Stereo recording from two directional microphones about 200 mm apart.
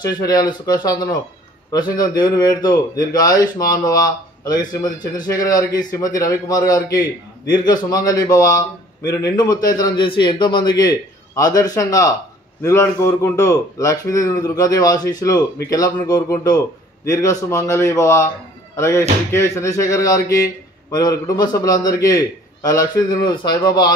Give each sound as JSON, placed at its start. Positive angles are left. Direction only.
{"t": 0.0, "sound": "speech", "side_deg": 20}